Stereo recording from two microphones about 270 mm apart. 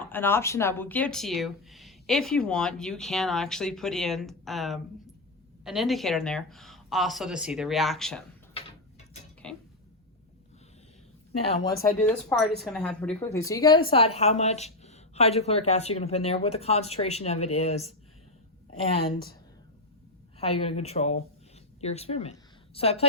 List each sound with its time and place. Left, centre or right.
0.0 s speech: centre
9.4 s a sound: centre
11.4 s a woman's voice: left
12.0 s a woman's voice: centre; by 17.9 s left
20.4 s a woman's voice: left